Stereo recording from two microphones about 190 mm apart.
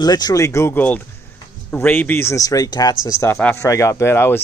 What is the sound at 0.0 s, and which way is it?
Speech, 20° left (ahead or behind).